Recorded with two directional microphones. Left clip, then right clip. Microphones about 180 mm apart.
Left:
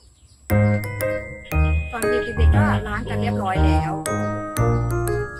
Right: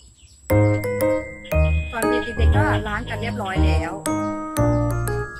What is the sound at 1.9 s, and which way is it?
Speech, centre (ahead or behind).